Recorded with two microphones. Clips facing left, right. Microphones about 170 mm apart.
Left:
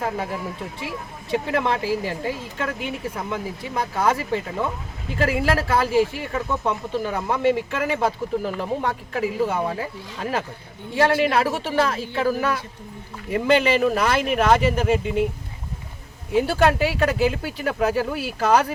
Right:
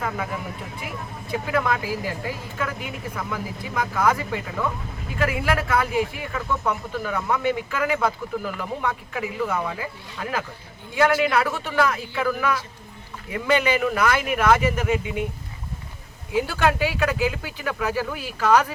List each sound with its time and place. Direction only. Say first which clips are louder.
0.0 s speech: left 2 dB; 30° left (ahead or behind)
1.5 s speech: even; 30° left (ahead or behind)
16.5 s speech: left 3 dB; 30° left (ahead or behind)